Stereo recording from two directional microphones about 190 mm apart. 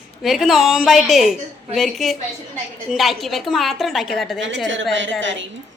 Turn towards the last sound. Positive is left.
turn(degrees=-75)  # may be behind; listen again after turning